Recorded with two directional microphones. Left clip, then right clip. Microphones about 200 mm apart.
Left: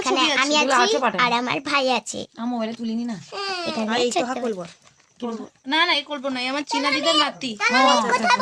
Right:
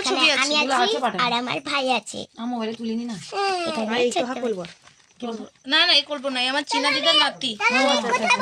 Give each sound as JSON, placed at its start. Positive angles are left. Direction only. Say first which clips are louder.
{"t": 0.0, "sound": "a woman's voice", "louder": "even", "side_deg": 30}
{"t": 3.3, "sound": "speech", "louder": "right 4 dB", "side_deg": -30}
{"t": 3.8, "sound": "a woman's voice", "louder": "left 1 dB", "side_deg": -5}
{"t": 5.6, "sound": "a woman's voice", "louder": "right 2 dB", "side_deg": 45}
{"t": 7.6, "sound": "a child's voice", "louder": "left 3 dB", "side_deg": 5}